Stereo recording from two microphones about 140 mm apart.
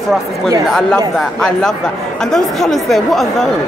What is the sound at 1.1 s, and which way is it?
Speech, 5° left (ahead or behind).